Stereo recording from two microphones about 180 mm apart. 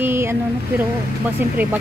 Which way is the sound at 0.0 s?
15° right (ahead or behind).